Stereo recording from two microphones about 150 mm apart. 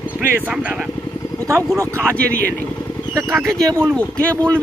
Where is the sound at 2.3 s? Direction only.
10° left (ahead or behind).